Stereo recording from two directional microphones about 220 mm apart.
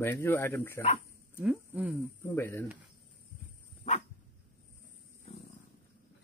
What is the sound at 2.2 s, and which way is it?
Speech, 10° left (ahead or behind).